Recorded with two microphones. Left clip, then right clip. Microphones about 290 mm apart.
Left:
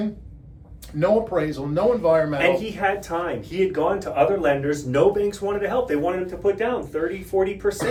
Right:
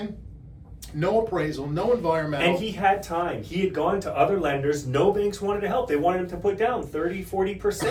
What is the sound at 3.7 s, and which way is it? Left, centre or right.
Speech, centre.